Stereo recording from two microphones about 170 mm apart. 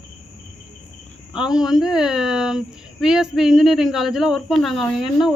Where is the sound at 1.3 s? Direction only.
5° right (ahead or behind).